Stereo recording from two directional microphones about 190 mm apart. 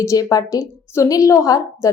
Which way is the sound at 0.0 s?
15° left (ahead or behind).